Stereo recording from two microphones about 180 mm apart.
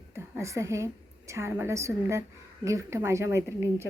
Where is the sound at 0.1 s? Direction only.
15° right (ahead or behind).